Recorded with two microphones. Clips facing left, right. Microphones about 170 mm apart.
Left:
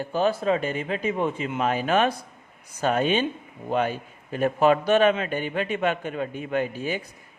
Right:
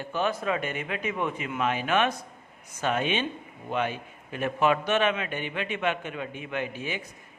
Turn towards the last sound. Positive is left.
turn(degrees=40)  # may be behind; listen again after turning